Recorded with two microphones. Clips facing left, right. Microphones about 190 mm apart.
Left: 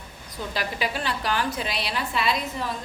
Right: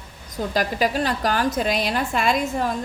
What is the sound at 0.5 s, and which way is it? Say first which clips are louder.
A woman's voice: right 7 dB; 45° right (ahead or behind).